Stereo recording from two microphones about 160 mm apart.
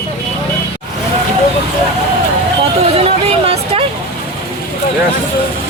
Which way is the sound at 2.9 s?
40° right (ahead or behind).